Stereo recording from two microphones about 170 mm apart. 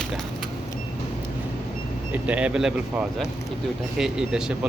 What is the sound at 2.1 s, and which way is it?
Speech, 10° right (ahead or behind).